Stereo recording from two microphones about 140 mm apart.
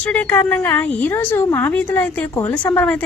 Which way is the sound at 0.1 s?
15° left (ahead or behind).